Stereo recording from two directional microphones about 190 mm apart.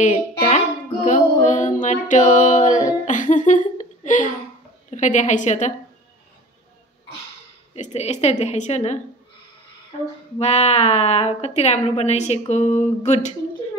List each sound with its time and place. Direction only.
0.0 s music: 35° left (ahead or behind)
3.1 s a sound: 40° left (ahead or behind)
4.9 s a woman's voice: 40° left (ahead or behind)
7.7 s a woman's voice: 35° left (ahead or behind)
10.4 s a woman's voice: 35° left (ahead or behind)